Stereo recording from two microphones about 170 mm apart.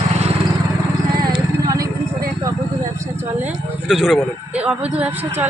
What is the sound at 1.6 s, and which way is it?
Vehicle, 20° right (ahead or behind).